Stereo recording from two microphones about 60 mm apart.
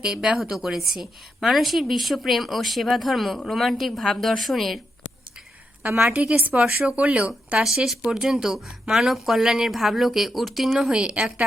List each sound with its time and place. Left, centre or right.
0.0 s a woman's voice: centre
6.4 s speech: right
7.8 s a woman's voice: centre
10.8 s speech: centre